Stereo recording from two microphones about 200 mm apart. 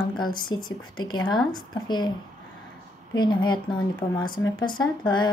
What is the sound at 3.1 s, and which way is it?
Speech, 20° left (ahead or behind).